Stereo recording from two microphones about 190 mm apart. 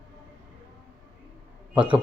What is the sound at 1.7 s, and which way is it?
Speech, 25° right (ahead or behind).